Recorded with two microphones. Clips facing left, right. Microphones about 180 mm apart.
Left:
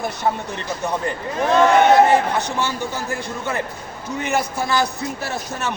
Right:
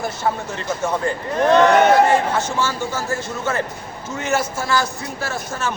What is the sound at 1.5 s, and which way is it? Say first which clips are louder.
Speech: right 1 dB; 5° left (ahead or behind).